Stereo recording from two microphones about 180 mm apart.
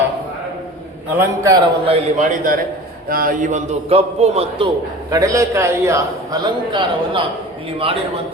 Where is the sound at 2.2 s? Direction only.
50° right (ahead or behind).